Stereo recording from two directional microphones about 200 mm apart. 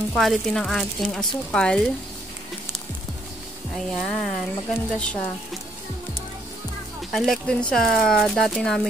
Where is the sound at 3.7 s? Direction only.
Centre (ahead or behind).